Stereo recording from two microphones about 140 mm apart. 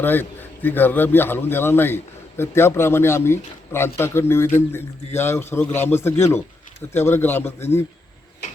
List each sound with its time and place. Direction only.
0.0 s speech: 15° left (ahead or behind)